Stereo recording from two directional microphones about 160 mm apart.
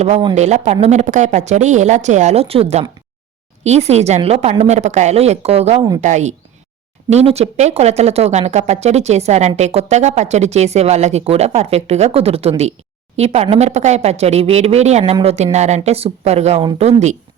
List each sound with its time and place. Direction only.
0.0 s speech: 40° right (ahead or behind)